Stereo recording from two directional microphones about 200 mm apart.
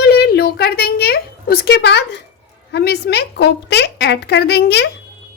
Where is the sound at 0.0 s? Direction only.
55° left (ahead or behind).